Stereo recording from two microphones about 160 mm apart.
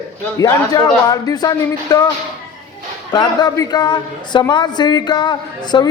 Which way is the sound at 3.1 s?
25° left (ahead or behind).